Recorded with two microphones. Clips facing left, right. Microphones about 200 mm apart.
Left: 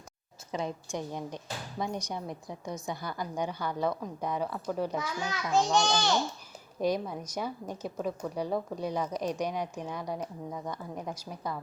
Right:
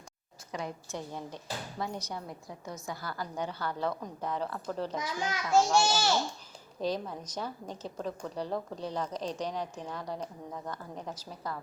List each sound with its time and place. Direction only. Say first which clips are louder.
0.5 s a woman's voice: left 4 dB; 15° left (ahead or behind)
4.9 s a child's voice: even; 15° right (ahead or behind)
6.7 s a woman's voice: left 3 dB; 10° left (ahead or behind)